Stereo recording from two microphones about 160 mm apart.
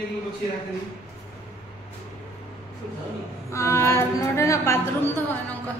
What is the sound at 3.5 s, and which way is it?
A woman's voice, 15° left (ahead or behind).